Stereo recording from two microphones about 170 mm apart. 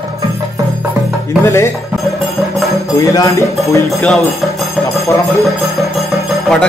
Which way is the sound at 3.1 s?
20° left (ahead or behind).